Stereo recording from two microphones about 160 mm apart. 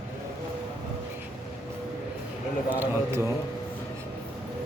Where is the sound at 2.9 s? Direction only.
15° right (ahead or behind).